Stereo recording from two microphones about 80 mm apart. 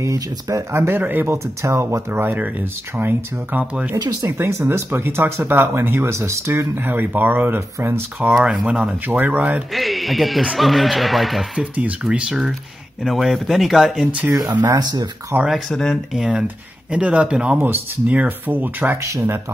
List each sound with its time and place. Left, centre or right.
0.0 s speech: right
0.7 s speech: right
1.6 s speech: right
8.3 s a man's voice: centre; by 9.6 s right
9.8 s a man's voice: centre
11.7 s a man's voice: centre
14.8 s speech: right
15.3 s speech: right
15.7 s a man's voice: centre
16.2 s speech: centre
19.0 s speech: right